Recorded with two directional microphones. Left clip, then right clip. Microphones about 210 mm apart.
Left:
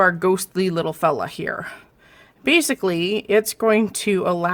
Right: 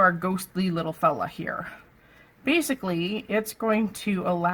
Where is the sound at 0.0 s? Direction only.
45° left (ahead or behind).